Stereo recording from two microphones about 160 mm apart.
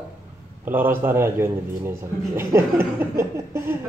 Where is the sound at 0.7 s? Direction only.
15° right (ahead or behind).